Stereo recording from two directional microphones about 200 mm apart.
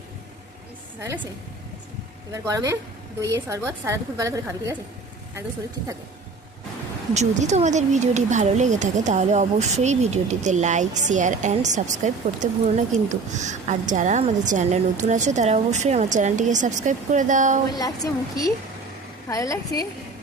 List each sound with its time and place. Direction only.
2.3 s a woman's voice: 15° right (ahead or behind)
7.1 s speech: 35° right (ahead or behind)
17.7 s a woman's voice: 20° left (ahead or behind)